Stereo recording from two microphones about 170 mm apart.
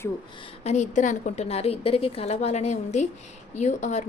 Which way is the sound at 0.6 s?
45° left (ahead or behind).